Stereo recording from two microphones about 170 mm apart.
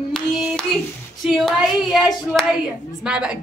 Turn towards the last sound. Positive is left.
turn(degrees=-5)  # may be behind; listen again after turning